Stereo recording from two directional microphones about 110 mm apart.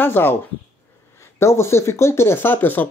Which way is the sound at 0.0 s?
20° left (ahead or behind).